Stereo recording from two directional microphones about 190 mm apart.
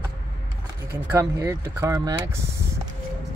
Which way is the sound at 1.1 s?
15° right (ahead or behind).